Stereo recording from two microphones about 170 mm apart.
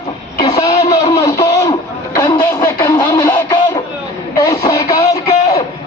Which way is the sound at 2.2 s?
20° left (ahead or behind).